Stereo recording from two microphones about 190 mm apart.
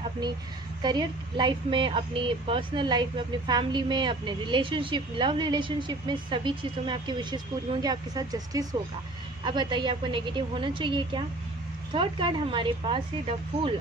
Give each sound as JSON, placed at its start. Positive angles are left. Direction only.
{"t": 0.8, "sound": "a woman's voice", "side_deg": -25}